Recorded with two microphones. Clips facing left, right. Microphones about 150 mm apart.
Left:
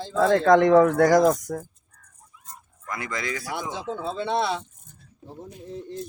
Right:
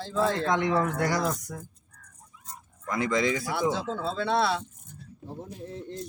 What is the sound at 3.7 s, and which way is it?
Speech, 15° left (ahead or behind).